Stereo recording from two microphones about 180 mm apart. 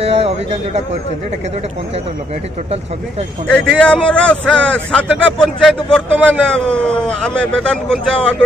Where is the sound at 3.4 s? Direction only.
5° left (ahead or behind).